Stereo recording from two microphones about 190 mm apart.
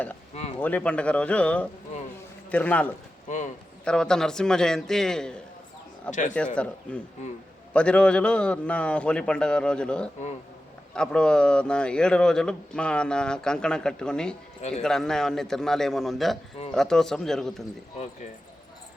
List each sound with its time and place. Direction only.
0.6 s speech: 5° left (ahead or behind)
3.2 s speech: 40° left (ahead or behind)
3.8 s speech: 5° left (ahead or behind)
6.1 s speech: 40° left (ahead or behind)
6.3 s speech: 5° left (ahead or behind)